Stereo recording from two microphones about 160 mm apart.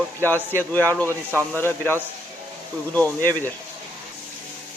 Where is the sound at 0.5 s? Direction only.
10° left (ahead or behind).